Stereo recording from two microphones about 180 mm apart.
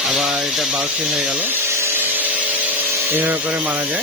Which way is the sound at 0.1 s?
5° right (ahead or behind).